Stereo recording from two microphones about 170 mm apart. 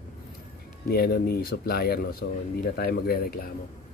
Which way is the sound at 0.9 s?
65° left (ahead or behind).